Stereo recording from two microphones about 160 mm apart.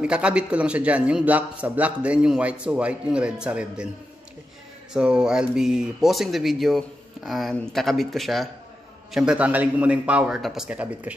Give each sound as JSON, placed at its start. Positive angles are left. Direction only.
{"t": 0.0, "sound": "a man's voice", "side_deg": -5}
{"t": 4.9, "sound": "a man's voice", "side_deg": -5}